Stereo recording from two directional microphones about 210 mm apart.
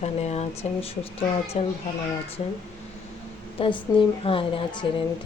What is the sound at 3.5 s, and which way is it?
A woman's voice, 25° left (ahead or behind).